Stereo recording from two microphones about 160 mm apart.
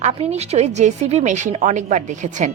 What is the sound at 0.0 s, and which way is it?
A woman's voice, 40° right (ahead or behind).